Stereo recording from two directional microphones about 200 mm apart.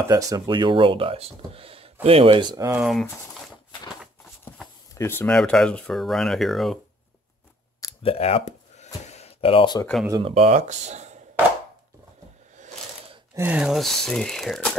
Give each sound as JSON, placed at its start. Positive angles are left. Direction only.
{"t": 0.1, "sound": "speech", "side_deg": -20}
{"t": 2.8, "sound": "speech", "side_deg": 0}
{"t": 4.9, "sound": "speech", "side_deg": 10}
{"t": 7.8, "sound": "a sound", "side_deg": 30}
{"t": 10.2, "sound": "speech", "side_deg": -35}
{"t": 12.5, "sound": "a sound", "side_deg": -35}
{"t": 13.3, "sound": "speech", "side_deg": -10}